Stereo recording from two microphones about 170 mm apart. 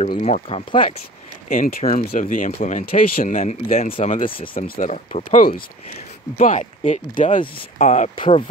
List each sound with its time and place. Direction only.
0.2 s speech: 40° left (ahead or behind)
1.5 s speech: 50° left (ahead or behind)
8.2 s speech: 35° left (ahead or behind)